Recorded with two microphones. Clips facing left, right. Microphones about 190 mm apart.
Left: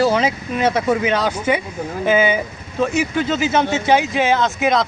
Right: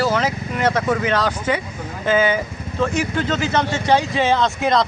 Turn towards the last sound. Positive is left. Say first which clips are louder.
# left 1 dB
turn(degrees=5)  # may be behind; listen again after turning